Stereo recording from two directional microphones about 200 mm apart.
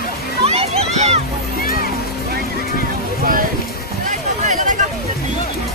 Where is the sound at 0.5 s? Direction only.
30° right (ahead or behind).